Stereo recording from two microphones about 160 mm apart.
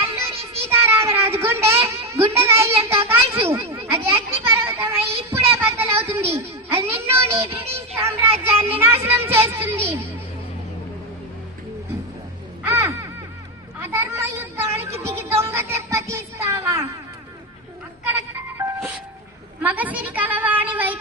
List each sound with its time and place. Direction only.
0.0 s child singing: 15° right (ahead or behind)
1.9 s a child's voice: 15° right (ahead or behind)
5.5 s a sound: 15° right (ahead or behind)
7.9 s speech: 15° right (ahead or behind)
12.6 s crow: 15° right (ahead or behind)
13.7 s speech: 15° right (ahead or behind)
18.1 s music: 15° right (ahead or behind)
19.6 s speech: 10° right (ahead or behind)